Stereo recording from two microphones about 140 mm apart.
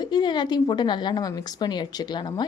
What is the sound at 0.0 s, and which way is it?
A woman's voice, 30° left (ahead or behind).